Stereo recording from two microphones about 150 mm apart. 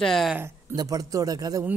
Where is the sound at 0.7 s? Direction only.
25° right (ahead or behind).